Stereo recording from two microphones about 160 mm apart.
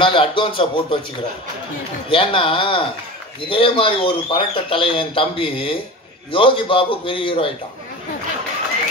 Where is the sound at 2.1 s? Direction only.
35° left (ahead or behind).